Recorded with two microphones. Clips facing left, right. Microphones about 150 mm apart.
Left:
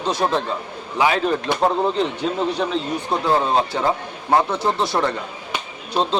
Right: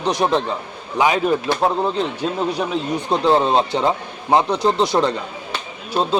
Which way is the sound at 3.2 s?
25° right (ahead or behind).